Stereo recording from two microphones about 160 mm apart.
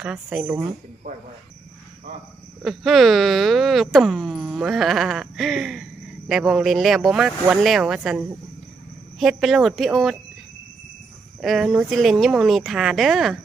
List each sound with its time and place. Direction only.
0.0 s speech: 5° right (ahead or behind)
1.1 s speech: 55° right (ahead or behind)
2.6 s speech: centre (ahead or behind)
11.3 s speech: centre (ahead or behind)